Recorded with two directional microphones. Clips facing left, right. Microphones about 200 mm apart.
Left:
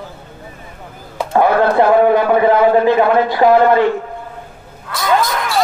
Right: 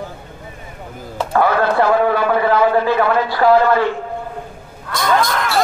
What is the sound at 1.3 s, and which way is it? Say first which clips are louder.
A man's voice: left 3 dB; 20° left (ahead or behind).